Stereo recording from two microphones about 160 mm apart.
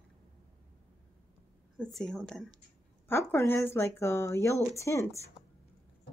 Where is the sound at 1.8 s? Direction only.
Centre (ahead or behind); by 5.2 s 20° left (ahead or behind).